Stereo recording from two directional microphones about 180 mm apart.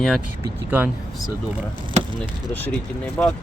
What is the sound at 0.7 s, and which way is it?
Speech, 10° right (ahead or behind).